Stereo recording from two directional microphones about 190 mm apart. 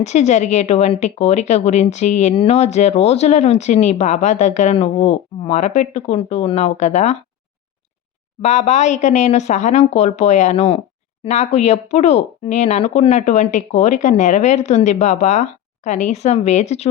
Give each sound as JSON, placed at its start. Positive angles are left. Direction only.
{"t": 0.0, "sound": "a woman's voice", "side_deg": 35}
{"t": 8.4, "sound": "a woman's voice", "side_deg": 35}